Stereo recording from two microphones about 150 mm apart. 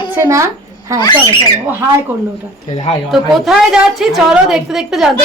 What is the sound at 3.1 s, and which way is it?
A woman's voice, 5° right (ahead or behind).